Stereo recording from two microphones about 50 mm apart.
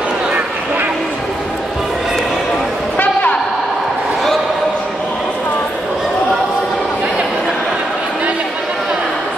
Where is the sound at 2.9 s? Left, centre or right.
Left.